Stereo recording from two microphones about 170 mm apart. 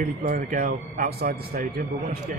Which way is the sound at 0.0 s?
55° right (ahead or behind).